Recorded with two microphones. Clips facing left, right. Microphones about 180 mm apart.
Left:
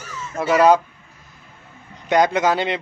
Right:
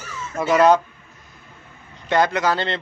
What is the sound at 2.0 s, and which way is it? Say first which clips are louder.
Speech: left 2 dB; 20° left (ahead or behind).